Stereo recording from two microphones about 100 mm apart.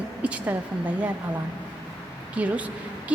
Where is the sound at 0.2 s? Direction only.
15° right (ahead or behind).